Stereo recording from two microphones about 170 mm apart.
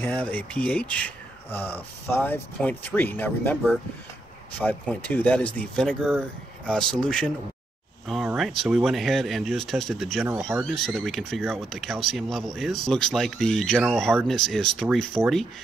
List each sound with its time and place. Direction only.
0.0 s speech: 10° left (ahead or behind)